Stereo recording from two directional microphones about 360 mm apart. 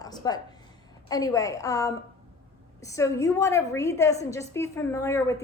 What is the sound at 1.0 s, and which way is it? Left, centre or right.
A woman's voice, centre.